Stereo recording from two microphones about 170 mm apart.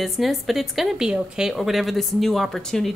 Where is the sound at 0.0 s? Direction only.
Centre (ahead or behind).